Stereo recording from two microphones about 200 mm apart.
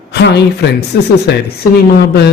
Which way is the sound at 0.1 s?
55° left (ahead or behind).